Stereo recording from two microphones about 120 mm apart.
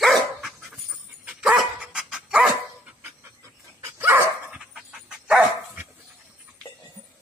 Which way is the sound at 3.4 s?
20° right (ahead or behind).